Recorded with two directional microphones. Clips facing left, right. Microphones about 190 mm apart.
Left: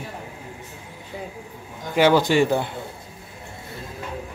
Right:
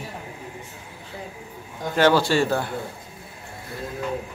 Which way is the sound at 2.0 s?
15° left (ahead or behind).